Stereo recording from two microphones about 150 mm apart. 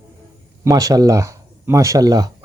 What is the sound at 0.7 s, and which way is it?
Speech, 25° right (ahead or behind).